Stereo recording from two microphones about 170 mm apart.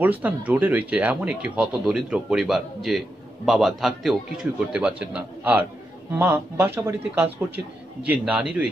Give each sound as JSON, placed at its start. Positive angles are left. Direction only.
{"t": 0.0, "sound": "a man's voice", "side_deg": -10}